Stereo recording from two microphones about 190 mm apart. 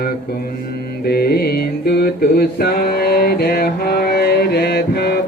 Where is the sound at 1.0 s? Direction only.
55° left (ahead or behind).